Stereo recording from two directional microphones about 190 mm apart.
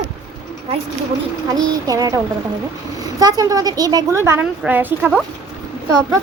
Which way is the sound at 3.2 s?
20° right (ahead or behind).